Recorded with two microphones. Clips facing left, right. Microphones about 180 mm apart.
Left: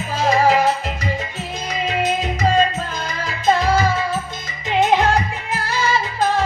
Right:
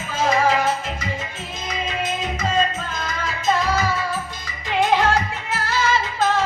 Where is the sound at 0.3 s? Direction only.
35° left (ahead or behind).